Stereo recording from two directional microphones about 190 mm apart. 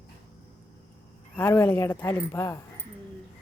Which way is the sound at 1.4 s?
10° left (ahead or behind).